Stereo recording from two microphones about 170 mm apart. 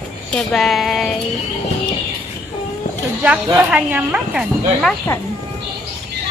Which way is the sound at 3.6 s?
5° right (ahead or behind).